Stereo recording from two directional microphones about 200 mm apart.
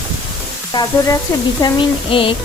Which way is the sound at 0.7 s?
15° left (ahead or behind).